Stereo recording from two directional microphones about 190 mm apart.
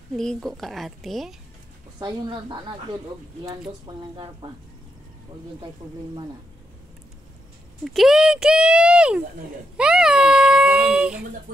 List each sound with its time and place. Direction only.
0.1 s speech: centre (ahead or behind)
2.0 s a woman's voice: 25° right (ahead or behind)
3.8 s a woman's voice: 25° right (ahead or behind)
7.8 s speech: centre (ahead or behind)
9.8 s a sound: 5° right (ahead or behind)